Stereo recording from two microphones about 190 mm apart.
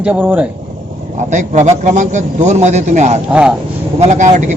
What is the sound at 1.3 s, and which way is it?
A man's voice, 40° right (ahead or behind).